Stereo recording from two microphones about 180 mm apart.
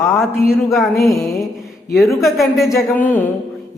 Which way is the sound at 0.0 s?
Centre (ahead or behind).